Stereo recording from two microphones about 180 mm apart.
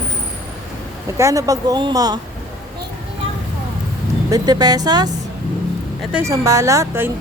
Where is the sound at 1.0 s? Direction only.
15° right (ahead or behind).